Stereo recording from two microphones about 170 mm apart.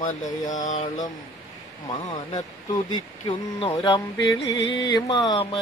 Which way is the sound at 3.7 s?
25° left (ahead or behind).